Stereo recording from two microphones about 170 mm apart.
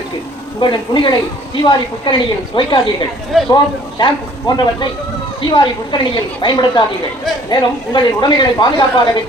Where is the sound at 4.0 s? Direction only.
25° left (ahead or behind).